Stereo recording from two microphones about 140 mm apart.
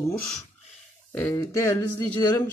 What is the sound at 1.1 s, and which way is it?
Speech, 20° left (ahead or behind).